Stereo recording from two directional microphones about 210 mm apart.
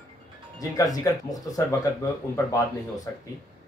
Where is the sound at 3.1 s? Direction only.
15° left (ahead or behind).